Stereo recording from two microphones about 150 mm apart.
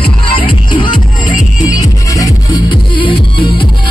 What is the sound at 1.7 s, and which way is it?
Music, 25° left (ahead or behind).